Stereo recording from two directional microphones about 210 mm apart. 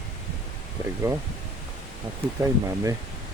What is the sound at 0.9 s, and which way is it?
Speech, 10° right (ahead or behind).